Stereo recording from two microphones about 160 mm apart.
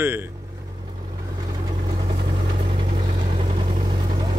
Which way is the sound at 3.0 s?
40° right (ahead or behind).